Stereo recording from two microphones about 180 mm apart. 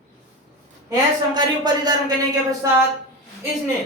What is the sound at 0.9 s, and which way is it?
Speech, 25° right (ahead or behind).